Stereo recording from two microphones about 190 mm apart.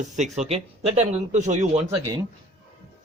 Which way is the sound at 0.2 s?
35° right (ahead or behind).